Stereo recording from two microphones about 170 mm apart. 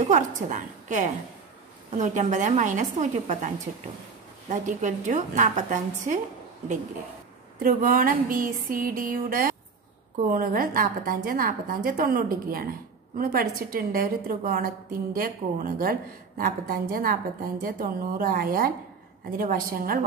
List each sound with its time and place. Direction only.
0.0 s a woman's voice: 45° right (ahead or behind)
7.5 s a woman's voice: 55° right (ahead or behind)